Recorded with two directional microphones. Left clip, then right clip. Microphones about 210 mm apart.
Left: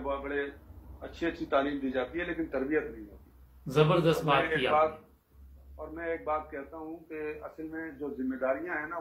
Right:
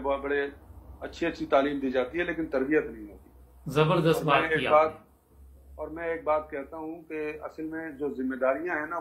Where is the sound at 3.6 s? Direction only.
20° right (ahead or behind).